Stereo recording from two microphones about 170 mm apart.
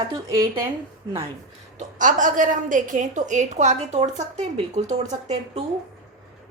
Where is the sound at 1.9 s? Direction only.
50° right (ahead or behind).